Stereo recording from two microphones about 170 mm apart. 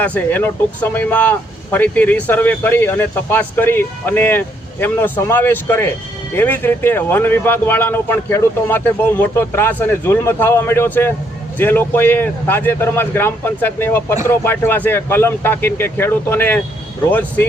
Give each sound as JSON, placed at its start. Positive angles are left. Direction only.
{"t": 0.0, "sound": "speech", "side_deg": 10}